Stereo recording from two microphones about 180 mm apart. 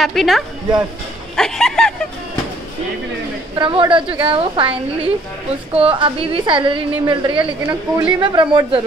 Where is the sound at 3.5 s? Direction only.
25° right (ahead or behind).